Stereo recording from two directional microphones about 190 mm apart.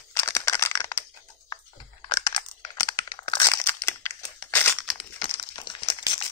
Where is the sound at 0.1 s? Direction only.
15° left (ahead or behind).